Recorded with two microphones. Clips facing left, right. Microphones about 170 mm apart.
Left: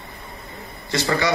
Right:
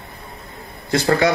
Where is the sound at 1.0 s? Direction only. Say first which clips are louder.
Right 5 dB; 55° right (ahead or behind).